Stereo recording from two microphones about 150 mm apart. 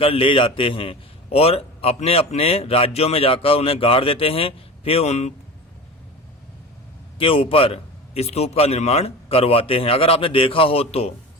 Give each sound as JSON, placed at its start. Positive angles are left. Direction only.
{"t": 0.0, "sound": "a man's voice", "side_deg": 35}
{"t": 7.2, "sound": "a man's voice", "side_deg": 35}